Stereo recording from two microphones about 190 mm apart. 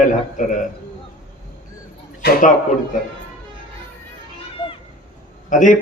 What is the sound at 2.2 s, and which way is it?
Speech, 45° left (ahead or behind).